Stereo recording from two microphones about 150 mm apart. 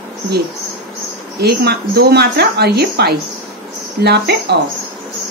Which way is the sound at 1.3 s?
90° right.